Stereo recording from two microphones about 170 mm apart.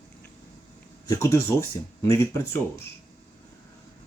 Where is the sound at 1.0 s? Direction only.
20° left (ahead or behind).